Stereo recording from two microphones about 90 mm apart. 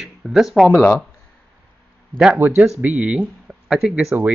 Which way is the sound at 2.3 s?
20° right (ahead or behind).